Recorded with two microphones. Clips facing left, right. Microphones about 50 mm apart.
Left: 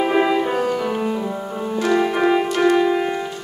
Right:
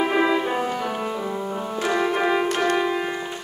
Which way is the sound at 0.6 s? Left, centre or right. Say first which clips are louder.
Left 4 dB; centre.